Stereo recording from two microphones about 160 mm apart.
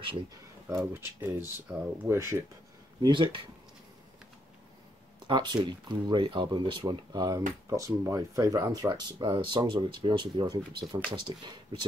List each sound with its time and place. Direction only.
0.7 s speech: 15° right (ahead or behind)
3.0 s speech: 30° right (ahead or behind)
5.2 s speech: 30° right (ahead or behind)